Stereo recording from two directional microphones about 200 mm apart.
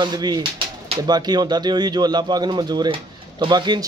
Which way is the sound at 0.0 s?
20° right (ahead or behind).